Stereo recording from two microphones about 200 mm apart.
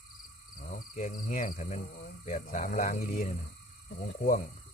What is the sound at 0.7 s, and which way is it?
Speech, 40° left (ahead or behind).